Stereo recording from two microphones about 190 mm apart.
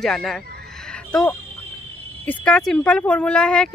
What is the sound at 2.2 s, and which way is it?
Speech, 5° left (ahead or behind).